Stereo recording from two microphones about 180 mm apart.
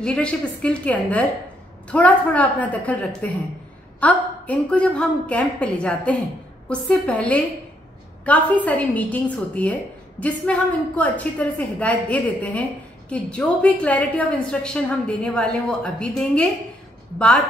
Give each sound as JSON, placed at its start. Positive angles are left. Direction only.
{"t": 0.0, "sound": "a woman's voice", "side_deg": 5}